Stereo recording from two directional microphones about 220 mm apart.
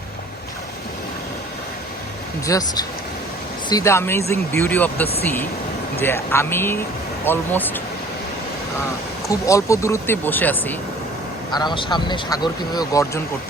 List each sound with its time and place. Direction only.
2.5 s speech: 15° left (ahead or behind)
9.3 s speech: 15° left (ahead or behind)
11.5 s speech: 20° left (ahead or behind)